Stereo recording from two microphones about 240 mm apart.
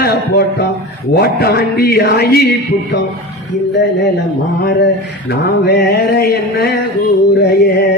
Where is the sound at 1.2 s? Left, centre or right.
Left.